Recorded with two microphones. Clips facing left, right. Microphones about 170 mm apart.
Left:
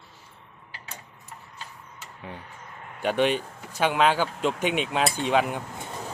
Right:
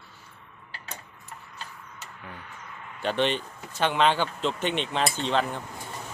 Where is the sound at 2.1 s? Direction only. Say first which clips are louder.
Left 5 dB; 30° left (ahead or behind); by 3.0 s 45° left (ahead or behind).